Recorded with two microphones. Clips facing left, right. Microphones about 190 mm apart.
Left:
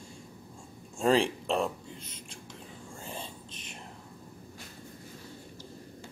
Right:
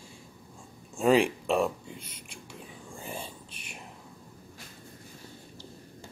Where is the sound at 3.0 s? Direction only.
10° right (ahead or behind).